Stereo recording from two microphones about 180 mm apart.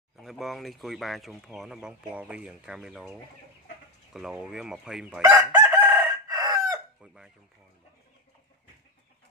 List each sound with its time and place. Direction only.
0.2 s speech: centre (ahead or behind)
5.3 s chicken: 15° right (ahead or behind)